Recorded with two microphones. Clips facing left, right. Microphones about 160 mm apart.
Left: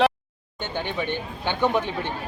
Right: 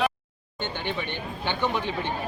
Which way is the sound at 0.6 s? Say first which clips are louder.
Left 2 dB; 15° left (ahead or behind).